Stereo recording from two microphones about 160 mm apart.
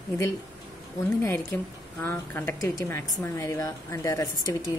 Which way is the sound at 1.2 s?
15° left (ahead or behind).